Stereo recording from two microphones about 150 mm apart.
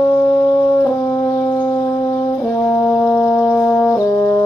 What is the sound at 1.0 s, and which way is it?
Brass instrument, 20° left (ahead or behind).